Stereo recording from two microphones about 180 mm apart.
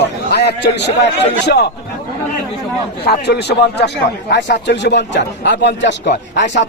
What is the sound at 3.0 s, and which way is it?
Speech, 65° left (ahead or behind).